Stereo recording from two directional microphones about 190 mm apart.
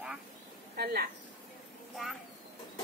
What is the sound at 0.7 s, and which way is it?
Speech, 55° right (ahead or behind).